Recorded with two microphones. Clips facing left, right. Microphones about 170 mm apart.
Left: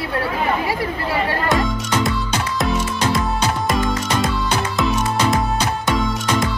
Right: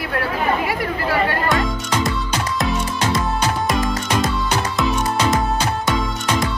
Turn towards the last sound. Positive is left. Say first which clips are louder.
# left 1 dB
turn(degrees=0)  # may be behind; listen again after turning